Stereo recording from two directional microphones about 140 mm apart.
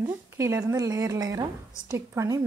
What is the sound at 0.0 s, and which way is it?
A woman's voice, 20° right (ahead or behind).